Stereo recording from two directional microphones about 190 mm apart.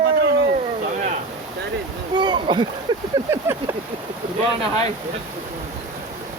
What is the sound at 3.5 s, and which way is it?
Speech, 10° right (ahead or behind).